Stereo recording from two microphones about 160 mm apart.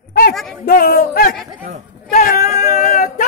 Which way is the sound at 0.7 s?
70° left (ahead or behind).